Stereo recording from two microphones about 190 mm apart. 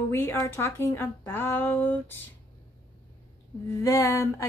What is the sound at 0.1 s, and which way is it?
Speech, 10° left (ahead or behind).